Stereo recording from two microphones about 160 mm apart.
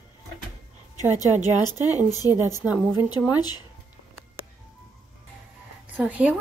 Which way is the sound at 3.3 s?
25° left (ahead or behind).